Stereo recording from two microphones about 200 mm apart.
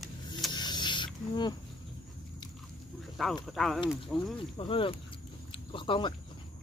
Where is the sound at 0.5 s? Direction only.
20° left (ahead or behind).